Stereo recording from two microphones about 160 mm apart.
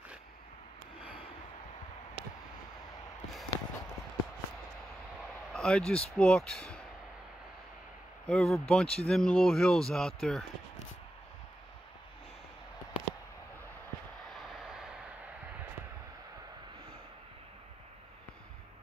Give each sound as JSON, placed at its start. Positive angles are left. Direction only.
{"t": 3.5, "sound": "a sound", "side_deg": 20}
{"t": 5.5, "sound": "speech", "side_deg": 5}
{"t": 8.3, "sound": "speech", "side_deg": 5}
{"t": 14.3, "sound": "vehicle", "side_deg": 0}